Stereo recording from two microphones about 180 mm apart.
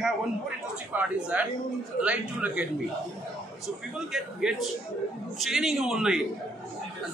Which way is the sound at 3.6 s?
Centre (ahead or behind).